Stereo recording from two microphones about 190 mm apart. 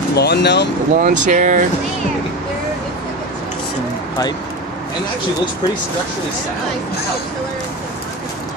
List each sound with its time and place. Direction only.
0.1 s speech: 60° left (ahead or behind)
0.9 s speech: 45° right (ahead or behind)